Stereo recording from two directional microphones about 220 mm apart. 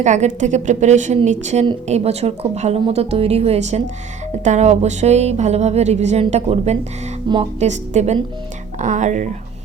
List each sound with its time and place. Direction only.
0.0 s a woman's voice: 35° right (ahead or behind)